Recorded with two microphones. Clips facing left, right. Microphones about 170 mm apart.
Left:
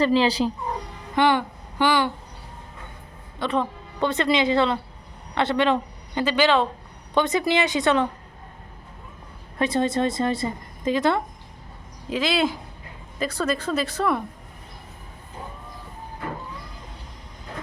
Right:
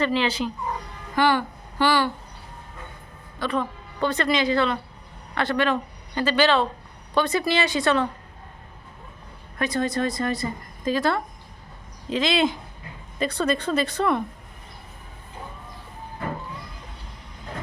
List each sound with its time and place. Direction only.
0.0 s speech: 35° left (ahead or behind)
1.1 s speech: 20° left (ahead or behind)
3.3 s a woman's voice: 25° left (ahead or behind)
9.6 s a woman's voice: 25° left (ahead or behind)
12.1 s a woman's voice: 5° left (ahead or behind)